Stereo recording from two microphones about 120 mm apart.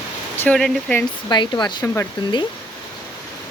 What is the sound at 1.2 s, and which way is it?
Speech, 40° left (ahead or behind).